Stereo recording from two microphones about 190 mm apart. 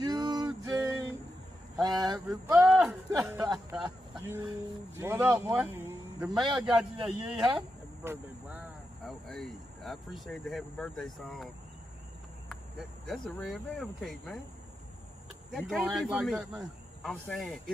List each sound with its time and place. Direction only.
0.0 s music: 20° right (ahead or behind)
1.8 s a sound: 20° right (ahead or behind)
2.6 s a sound: 5° right (ahead or behind)
2.9 s speech: 15° right (ahead or behind)
9.0 s speech: centre (ahead or behind)
12.4 s speech: centre (ahead or behind)
15.5 s speech: centre (ahead or behind)